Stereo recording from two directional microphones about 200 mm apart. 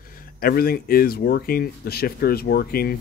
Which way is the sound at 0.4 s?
50° left (ahead or behind).